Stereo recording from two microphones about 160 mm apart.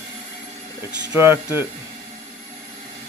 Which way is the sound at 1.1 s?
10° right (ahead or behind).